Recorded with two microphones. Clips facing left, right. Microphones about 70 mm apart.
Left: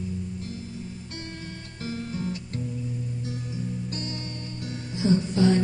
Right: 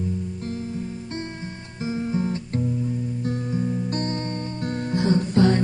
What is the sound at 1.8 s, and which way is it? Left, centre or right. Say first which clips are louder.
Music: right 7 dB; right.